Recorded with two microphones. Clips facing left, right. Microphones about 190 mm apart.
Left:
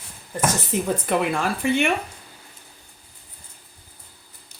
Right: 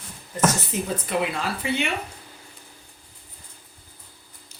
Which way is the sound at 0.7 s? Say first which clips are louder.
Left 4 dB; 55° left (ahead or behind).